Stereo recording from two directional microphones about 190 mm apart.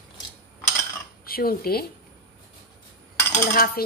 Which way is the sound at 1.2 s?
50° left (ahead or behind).